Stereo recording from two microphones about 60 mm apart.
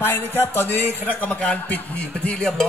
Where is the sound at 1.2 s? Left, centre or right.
Left.